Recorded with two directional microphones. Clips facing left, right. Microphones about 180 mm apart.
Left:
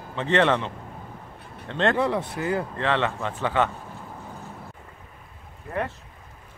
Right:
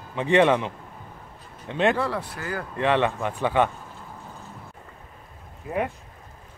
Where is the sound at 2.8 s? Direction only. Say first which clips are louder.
Right 3 dB; 15° right (ahead or behind).